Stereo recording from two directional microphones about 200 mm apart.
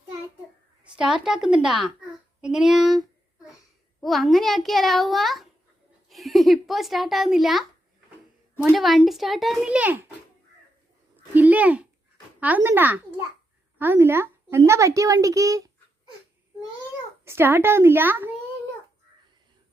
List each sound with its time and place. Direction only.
0.9 s a child's voice: 5° right (ahead or behind)
2.4 s child singing: centre (ahead or behind)
4.0 s a child's voice: centre (ahead or behind)
8.7 s a child's voice: centre (ahead or behind)
11.3 s a woman's voice: 10° right (ahead or behind)
17.2 s a woman's voice: 10° right (ahead or behind)